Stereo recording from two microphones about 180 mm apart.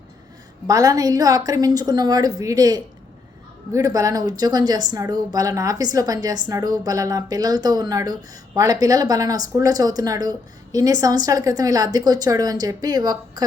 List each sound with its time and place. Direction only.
0.7 s speech: 20° right (ahead or behind)